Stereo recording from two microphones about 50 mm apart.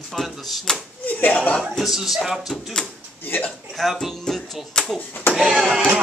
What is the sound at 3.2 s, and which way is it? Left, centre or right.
Speech, left.